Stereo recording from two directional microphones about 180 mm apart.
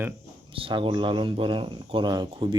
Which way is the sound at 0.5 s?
30° right (ahead or behind).